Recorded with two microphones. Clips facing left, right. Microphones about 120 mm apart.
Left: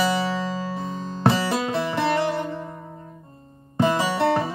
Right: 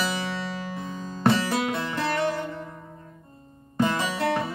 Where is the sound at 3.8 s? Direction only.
25° left (ahead or behind).